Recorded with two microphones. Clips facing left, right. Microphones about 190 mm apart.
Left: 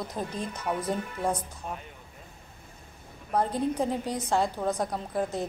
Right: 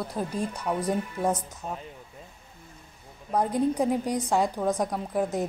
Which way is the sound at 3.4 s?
15° right (ahead or behind).